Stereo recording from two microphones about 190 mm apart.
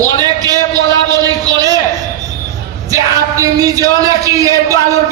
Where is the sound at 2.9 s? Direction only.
15° right (ahead or behind).